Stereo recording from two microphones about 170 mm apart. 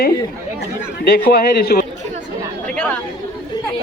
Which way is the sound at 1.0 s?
65° left (ahead or behind).